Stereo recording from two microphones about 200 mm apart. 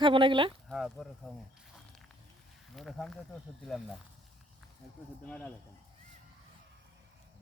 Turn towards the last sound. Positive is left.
turn(degrees=5)  # may be behind; listen again after turning